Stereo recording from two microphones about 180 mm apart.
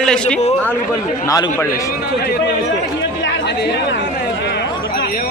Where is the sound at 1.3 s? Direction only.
20° left (ahead or behind).